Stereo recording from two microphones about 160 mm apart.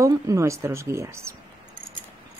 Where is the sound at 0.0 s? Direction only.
20° right (ahead or behind).